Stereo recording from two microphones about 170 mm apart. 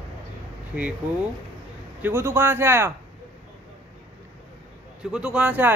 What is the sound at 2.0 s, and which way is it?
Speech, 15° right (ahead or behind).